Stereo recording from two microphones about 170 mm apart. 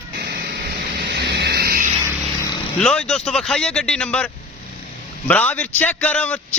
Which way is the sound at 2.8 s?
5° left (ahead or behind).